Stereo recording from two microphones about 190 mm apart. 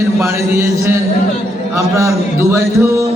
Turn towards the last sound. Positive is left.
turn(degrees=-15)  # may be behind; listen again after turning